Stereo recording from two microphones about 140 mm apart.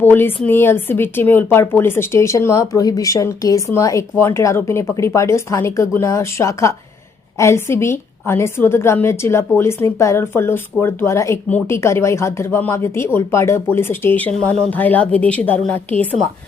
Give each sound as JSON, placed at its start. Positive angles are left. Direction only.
{"t": 0.0, "sound": "speech", "side_deg": 15}